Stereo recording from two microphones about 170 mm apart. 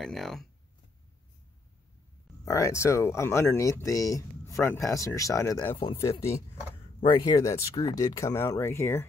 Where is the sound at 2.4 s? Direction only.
20° left (ahead or behind).